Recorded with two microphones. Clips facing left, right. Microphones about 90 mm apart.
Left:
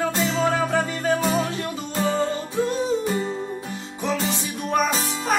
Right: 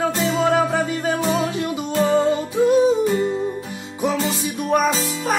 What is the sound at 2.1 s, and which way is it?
Music, 15° right (ahead or behind).